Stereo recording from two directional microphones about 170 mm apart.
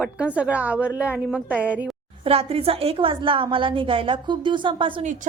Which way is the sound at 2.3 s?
35° right (ahead or behind).